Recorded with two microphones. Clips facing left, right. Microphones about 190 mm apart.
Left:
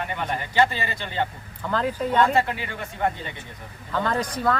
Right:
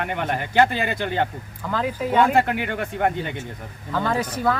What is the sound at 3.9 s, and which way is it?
Speech, centre (ahead or behind).